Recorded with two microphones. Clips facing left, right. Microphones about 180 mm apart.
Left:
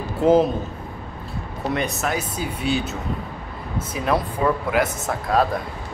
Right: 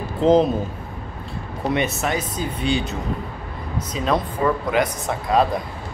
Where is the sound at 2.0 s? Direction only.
5° left (ahead or behind).